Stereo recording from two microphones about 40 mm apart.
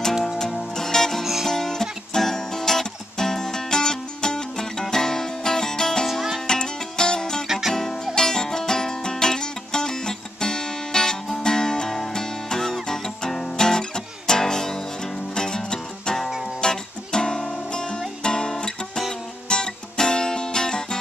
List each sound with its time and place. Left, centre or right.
0.4 s music: centre
1.2 s music: centre
1.5 s music: centre
7.4 s music: centre
7.7 s music: centre
18.2 s guitar: centre
19.5 s music: centre